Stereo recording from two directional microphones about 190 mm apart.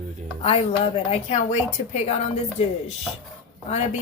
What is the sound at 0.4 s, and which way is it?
A woman's voice, 30° left (ahead or behind).